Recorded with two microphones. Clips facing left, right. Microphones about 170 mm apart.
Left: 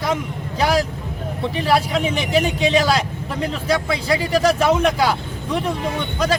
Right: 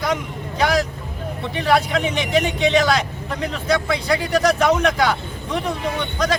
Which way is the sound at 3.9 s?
5° left (ahead or behind).